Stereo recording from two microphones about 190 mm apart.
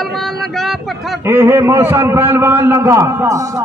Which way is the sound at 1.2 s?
10° right (ahead or behind).